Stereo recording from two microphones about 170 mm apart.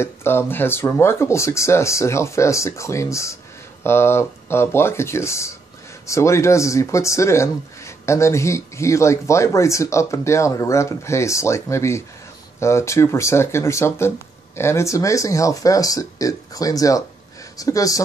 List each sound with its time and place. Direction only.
0.0 s speech: 15° left (ahead or behind)